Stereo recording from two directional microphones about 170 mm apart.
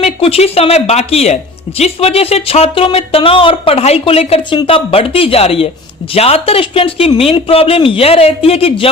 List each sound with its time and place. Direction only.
0.0 s speech: 35° left (ahead or behind)